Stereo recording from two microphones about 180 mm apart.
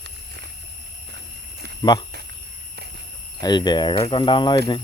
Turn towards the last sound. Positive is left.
turn(degrees=25)  # may be behind; listen again after turning